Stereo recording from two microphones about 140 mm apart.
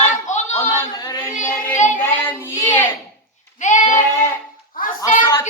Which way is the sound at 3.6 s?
55° left (ahead or behind).